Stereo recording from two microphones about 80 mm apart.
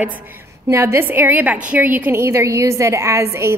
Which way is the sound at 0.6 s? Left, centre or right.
Right.